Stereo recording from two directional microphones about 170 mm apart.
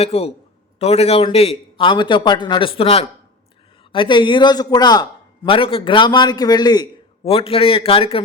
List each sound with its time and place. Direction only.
0.0 s a man's voice: 35° left (ahead or behind)
7.3 s a man's voice: 35° left (ahead or behind)